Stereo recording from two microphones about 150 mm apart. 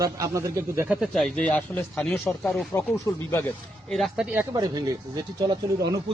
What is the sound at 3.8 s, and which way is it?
Speech, centre (ahead or behind).